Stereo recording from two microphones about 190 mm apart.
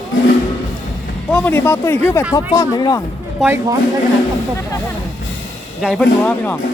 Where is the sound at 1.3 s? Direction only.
10° left (ahead or behind).